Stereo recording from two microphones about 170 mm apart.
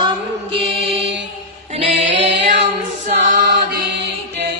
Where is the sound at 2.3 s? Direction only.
90° right.